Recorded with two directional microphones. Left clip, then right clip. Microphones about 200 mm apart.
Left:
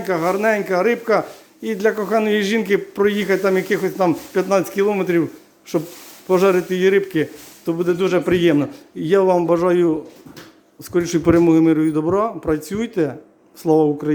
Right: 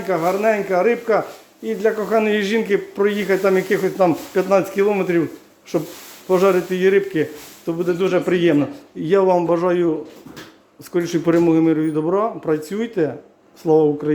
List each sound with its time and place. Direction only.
0.0 s a man's voice: 20° left (ahead or behind)
10.9 s a man's voice: 20° left (ahead or behind)